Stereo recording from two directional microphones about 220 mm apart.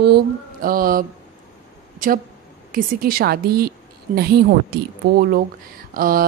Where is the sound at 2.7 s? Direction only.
40° right (ahead or behind).